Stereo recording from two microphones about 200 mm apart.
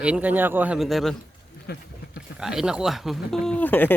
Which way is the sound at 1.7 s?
50° left (ahead or behind).